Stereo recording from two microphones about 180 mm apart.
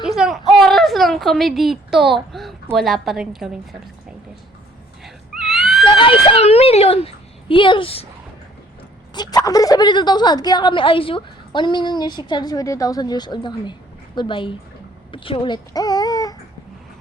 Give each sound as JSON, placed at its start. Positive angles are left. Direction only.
{"t": 0.2, "sound": "a sound", "side_deg": 0}
{"t": 2.7, "sound": "a woman's voice", "side_deg": 0}
{"t": 5.0, "sound": "wheeze", "side_deg": 0}
{"t": 5.8, "sound": "a child's voice", "side_deg": 30}
{"t": 9.1, "sound": "a woman's voice", "side_deg": 20}